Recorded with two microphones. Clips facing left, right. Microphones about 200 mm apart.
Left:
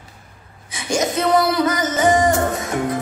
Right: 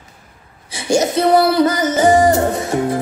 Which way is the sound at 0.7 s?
30° right (ahead or behind).